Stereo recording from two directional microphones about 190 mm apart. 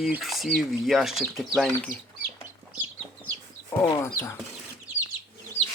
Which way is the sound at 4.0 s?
15° left (ahead or behind).